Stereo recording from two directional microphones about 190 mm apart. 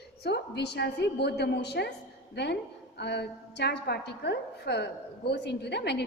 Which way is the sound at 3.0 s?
60° left (ahead or behind).